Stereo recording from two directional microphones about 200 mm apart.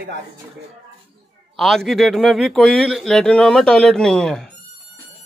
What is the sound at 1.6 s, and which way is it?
Speech, centre (ahead or behind).